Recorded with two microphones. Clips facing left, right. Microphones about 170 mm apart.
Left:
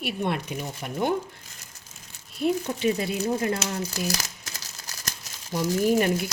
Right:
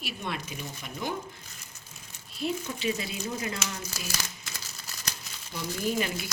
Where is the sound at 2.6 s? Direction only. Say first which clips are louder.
Left 6 dB; 50° left (ahead or behind).